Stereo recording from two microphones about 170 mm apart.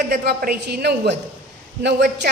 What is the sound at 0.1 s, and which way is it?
A woman's voice, 70° right (ahead or behind).